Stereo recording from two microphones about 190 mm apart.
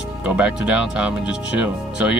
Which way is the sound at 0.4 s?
5° right (ahead or behind).